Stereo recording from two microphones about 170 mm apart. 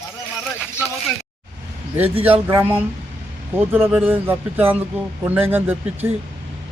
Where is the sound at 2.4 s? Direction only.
15° right (ahead or behind).